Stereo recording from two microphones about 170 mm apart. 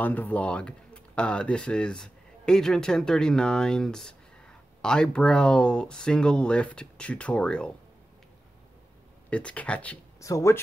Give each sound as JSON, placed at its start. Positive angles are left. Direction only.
{"t": 0.0, "sound": "speech", "side_deg": 10}
{"t": 9.3, "sound": "speech", "side_deg": 5}